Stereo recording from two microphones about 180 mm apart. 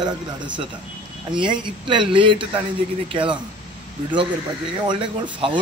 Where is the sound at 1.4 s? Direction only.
25° right (ahead or behind).